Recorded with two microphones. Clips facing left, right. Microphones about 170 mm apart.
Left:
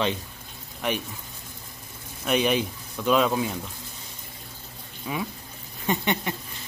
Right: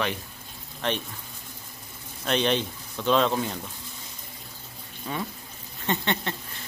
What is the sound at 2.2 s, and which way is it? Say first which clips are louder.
Speech: left 2 dB; 10° left (ahead or behind).